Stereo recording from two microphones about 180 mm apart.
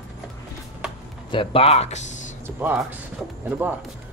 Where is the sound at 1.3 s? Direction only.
30° left (ahead or behind).